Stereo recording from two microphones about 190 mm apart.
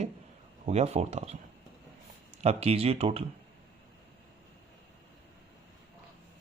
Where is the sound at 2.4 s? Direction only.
30° right (ahead or behind).